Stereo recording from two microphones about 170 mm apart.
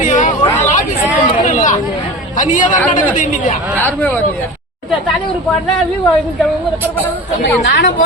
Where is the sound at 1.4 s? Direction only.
50° left (ahead or behind).